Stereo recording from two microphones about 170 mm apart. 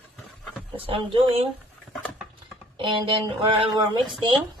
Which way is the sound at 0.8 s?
30° right (ahead or behind).